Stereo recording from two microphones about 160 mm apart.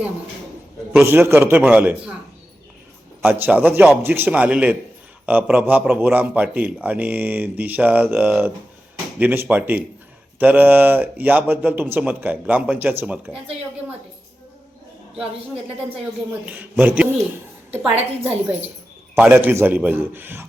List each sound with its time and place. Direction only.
0.9 s speech: 15° right (ahead or behind)
3.2 s speech: 10° right (ahead or behind)
16.5 s speech: 10° right (ahead or behind)
17.9 s a woman's voice: 40° right (ahead or behind)
19.1 s speech: 10° right (ahead or behind)